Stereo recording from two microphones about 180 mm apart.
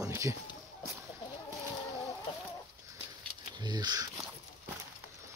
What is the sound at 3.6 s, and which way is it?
Speech, 25° right (ahead or behind).